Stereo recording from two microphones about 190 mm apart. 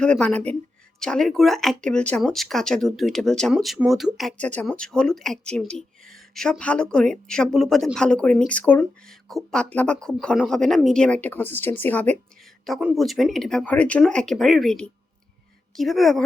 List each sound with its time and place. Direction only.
0.0 s speech: 5° left (ahead or behind)